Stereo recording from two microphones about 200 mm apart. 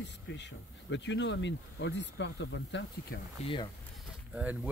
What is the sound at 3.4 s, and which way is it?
Speech, 25° left (ahead or behind).